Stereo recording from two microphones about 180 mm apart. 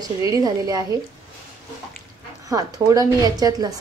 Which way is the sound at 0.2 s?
20° right (ahead or behind).